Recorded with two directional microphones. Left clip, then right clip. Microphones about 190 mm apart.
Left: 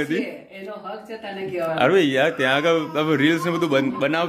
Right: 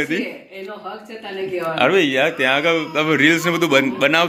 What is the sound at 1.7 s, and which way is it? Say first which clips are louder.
A man's voice: right 2 dB; 20° left (ahead or behind).